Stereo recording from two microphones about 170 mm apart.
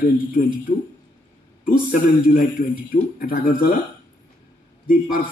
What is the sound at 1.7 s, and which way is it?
Speech, 55° left (ahead or behind).